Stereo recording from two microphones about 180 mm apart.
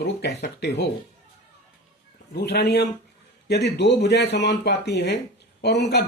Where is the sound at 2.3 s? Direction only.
65° left (ahead or behind).